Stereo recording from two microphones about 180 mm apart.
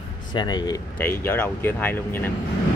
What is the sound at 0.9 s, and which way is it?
Speech, 10° left (ahead or behind).